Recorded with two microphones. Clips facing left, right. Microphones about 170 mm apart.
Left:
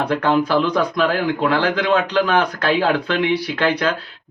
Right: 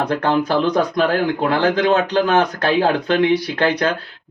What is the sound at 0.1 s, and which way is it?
Speech, 45° right (ahead or behind).